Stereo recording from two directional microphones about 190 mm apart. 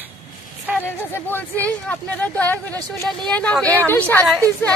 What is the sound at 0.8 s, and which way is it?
A woman's voice, 10° left (ahead or behind).